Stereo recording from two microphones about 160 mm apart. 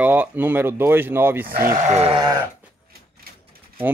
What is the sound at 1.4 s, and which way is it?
Speech, 60° right (ahead or behind).